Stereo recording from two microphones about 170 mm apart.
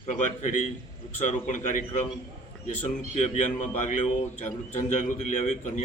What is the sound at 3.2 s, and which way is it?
A man's voice, 45° left (ahead or behind).